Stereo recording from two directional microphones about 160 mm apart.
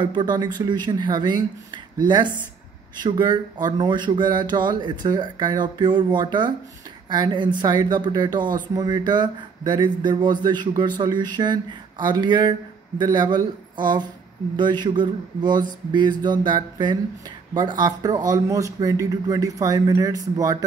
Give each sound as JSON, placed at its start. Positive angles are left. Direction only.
{"t": 0.0, "sound": "speech", "side_deg": -30}
{"t": 14.6, "sound": "speech", "side_deg": -25}